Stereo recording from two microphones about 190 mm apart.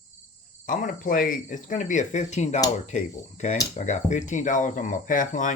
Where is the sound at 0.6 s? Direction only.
45° left (ahead or behind).